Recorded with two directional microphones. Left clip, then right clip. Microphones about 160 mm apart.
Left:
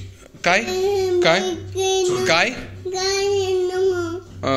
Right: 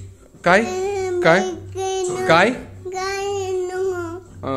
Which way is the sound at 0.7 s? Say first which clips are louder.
Left 3 dB; 15° right (ahead or behind).